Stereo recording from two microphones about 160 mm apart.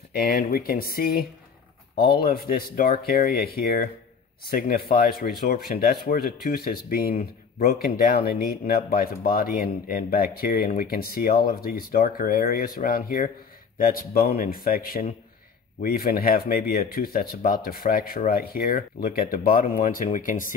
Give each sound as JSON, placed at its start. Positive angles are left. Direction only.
{"t": 0.1, "sound": "speech", "side_deg": 70}